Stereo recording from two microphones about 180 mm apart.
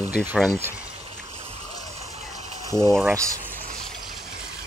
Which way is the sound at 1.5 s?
35° right (ahead or behind).